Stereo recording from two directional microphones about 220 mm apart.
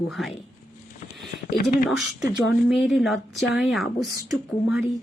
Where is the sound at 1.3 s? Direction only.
40° left (ahead or behind).